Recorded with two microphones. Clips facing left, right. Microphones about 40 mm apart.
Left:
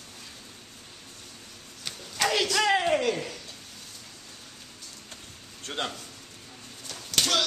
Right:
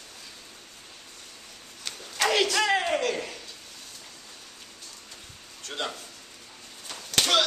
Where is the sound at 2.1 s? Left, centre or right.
Centre.